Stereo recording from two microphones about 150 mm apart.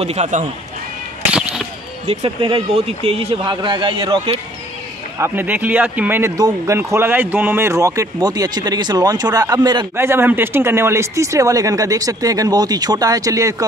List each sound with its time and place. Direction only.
0.0 s speech: 45° right (ahead or behind)
1.3 s a sound: 5° right (ahead or behind)
2.0 s speech: 35° right (ahead or behind)
5.2 s speech: 15° right (ahead or behind)
9.9 s speech: 15° right (ahead or behind)